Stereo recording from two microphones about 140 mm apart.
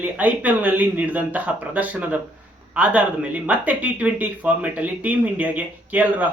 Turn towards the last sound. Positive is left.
turn(degrees=-10)  # may be behind; listen again after turning